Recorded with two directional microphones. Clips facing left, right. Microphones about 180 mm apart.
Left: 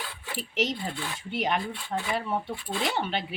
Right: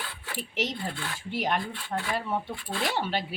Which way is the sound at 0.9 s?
20° left (ahead or behind).